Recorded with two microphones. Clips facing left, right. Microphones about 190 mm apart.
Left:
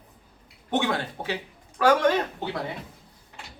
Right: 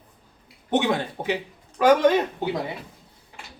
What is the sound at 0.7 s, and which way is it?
Speech, 20° right (ahead or behind).